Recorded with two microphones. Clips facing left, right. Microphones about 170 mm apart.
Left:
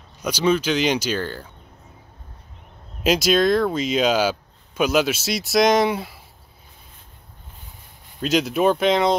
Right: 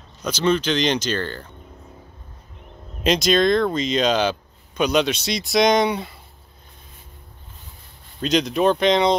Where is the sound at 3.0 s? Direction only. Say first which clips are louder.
Even; 5° left (ahead or behind).